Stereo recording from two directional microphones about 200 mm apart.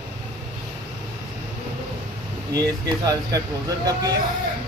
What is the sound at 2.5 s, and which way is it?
Speech, 20° right (ahead or behind).